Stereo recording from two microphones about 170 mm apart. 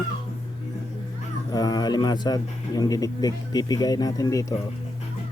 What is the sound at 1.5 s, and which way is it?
A man's voice, 20° left (ahead or behind).